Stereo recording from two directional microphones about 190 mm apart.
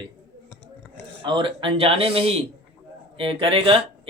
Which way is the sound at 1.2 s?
25° right (ahead or behind).